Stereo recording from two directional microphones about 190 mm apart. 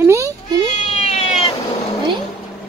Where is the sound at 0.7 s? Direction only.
35° left (ahead or behind).